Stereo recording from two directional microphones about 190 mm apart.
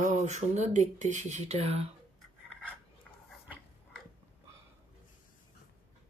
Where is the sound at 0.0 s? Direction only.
40° right (ahead or behind).